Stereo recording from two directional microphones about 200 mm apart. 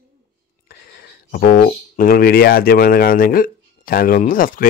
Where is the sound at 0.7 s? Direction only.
50° left (ahead or behind).